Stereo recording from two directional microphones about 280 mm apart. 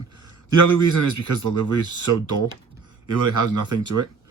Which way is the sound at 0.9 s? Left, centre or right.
Right.